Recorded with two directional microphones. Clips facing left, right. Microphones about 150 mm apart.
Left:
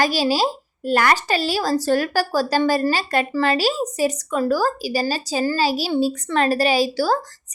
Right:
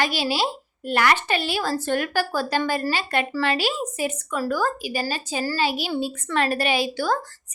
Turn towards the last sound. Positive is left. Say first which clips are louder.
# left 4 dB
turn(degrees=35)  # may be behind; listen again after turning